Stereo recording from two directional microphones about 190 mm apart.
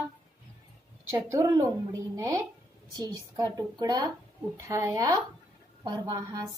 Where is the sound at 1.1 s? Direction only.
15° right (ahead or behind).